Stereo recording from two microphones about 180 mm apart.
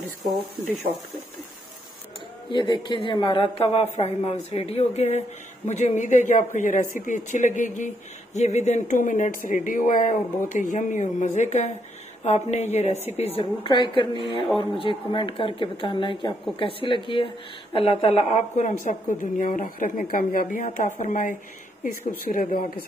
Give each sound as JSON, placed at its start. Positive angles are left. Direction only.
{"t": 0.0, "sound": "speech", "side_deg": 0}
{"t": 2.5, "sound": "a woman's voice", "side_deg": 25}
{"t": 13.7, "sound": "a woman's voice", "side_deg": 25}